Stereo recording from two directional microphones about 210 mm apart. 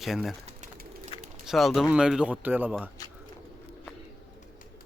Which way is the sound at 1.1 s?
25° left (ahead or behind).